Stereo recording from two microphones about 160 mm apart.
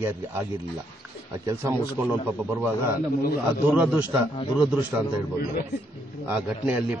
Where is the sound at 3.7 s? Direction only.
10° right (ahead or behind).